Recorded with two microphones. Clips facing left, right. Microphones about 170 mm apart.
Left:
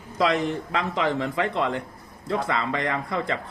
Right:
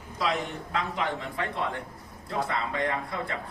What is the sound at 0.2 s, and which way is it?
Speech, 90° left.